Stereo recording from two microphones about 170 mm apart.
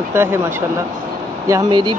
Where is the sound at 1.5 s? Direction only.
25° right (ahead or behind).